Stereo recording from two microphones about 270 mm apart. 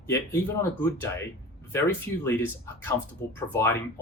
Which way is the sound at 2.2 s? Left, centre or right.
Centre.